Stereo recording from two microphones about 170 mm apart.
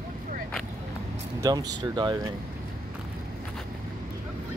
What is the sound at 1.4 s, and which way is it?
Speech, 20° right (ahead or behind).